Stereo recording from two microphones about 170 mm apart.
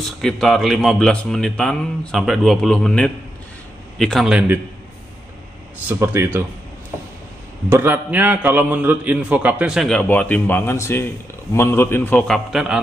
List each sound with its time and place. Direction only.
0.0 s speech: centre (ahead or behind)
5.9 s a man's voice: 10° right (ahead or behind)
7.7 s a man's voice: 10° right (ahead or behind)